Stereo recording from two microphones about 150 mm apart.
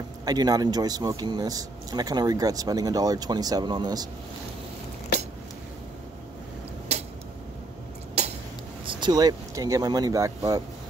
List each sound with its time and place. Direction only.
0.2 s speech: 25° right (ahead or behind)
8.2 s a sound: 45° right (ahead or behind)
8.8 s speech: 30° right (ahead or behind)